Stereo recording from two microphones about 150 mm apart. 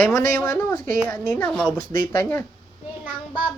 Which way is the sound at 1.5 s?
Centre (ahead or behind).